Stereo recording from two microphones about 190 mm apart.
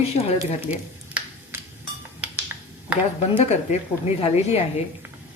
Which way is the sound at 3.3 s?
35° left (ahead or behind).